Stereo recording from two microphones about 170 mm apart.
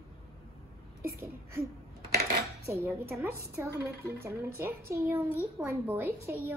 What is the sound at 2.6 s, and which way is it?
A child's voice, 15° right (ahead or behind).